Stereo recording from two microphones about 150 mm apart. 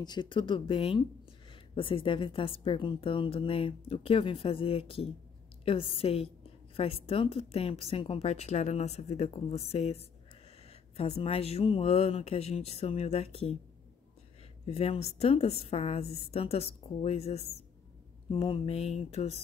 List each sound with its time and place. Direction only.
0.0 s a woman's voice: 30° left (ahead or behind)
14.7 s speech: 45° left (ahead or behind)